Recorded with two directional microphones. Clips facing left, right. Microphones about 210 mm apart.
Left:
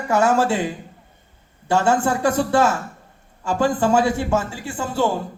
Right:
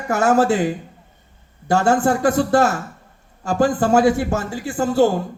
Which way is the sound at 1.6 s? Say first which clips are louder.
Right 2 dB; 40° right (ahead or behind).